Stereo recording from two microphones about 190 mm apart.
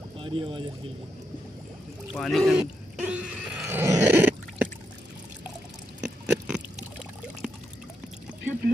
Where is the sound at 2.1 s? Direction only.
5° left (ahead or behind).